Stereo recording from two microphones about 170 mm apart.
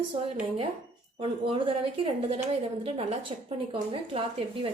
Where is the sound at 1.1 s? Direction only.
30° right (ahead or behind).